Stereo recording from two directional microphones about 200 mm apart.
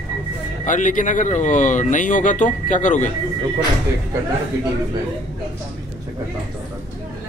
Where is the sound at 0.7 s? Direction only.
40° left (ahead or behind).